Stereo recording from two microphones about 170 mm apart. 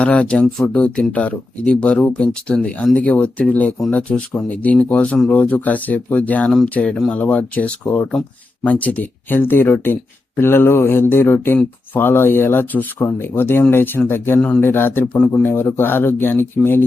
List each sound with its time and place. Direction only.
0.0 s speech: 5° left (ahead or behind)